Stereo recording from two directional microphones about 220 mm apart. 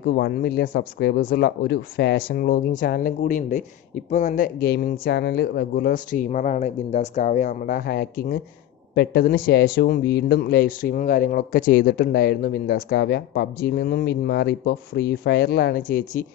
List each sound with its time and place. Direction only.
0.0 s a man's voice: 45° left (ahead or behind)